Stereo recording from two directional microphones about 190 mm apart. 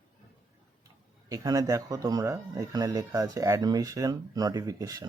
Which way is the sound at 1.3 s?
20° right (ahead or behind).